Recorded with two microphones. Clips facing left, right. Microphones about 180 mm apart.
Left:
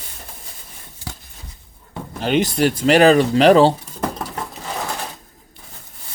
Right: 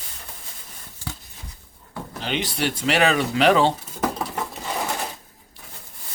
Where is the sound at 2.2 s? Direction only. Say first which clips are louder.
Left 9 dB; 45° left (ahead or behind).